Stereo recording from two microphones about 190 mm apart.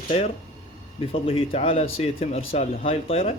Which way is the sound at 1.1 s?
30° left (ahead or behind).